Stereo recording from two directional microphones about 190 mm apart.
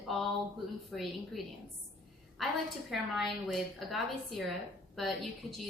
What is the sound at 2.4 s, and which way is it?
A woman's voice, centre (ahead or behind).